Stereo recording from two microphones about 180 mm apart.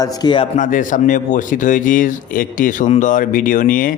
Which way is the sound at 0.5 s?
45° left (ahead or behind).